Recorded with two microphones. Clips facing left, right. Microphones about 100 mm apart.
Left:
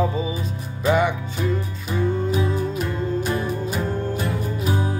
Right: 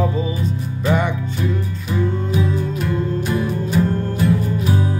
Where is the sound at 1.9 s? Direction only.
20° left (ahead or behind).